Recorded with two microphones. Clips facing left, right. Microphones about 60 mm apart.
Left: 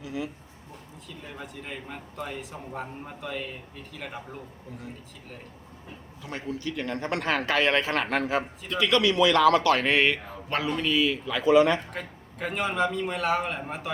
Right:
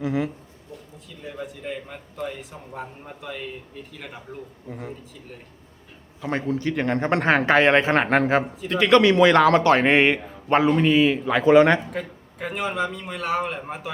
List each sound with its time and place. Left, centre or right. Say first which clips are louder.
0.0 s a sound: right 9 dB; right
1.2 s a man's voice: right 7 dB; centre
6.2 s a man's voice: right 9 dB; right
11.9 s a man's voice: right 6 dB; centre